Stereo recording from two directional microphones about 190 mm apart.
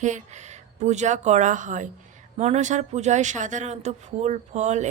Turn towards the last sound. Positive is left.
turn(degrees=-35)  # may be behind; listen again after turning